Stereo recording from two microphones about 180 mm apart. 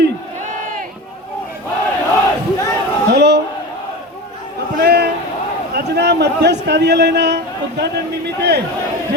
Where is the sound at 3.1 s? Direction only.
70° right (ahead or behind).